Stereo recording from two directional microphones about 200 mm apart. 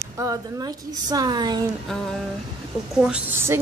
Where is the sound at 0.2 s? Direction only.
15° right (ahead or behind).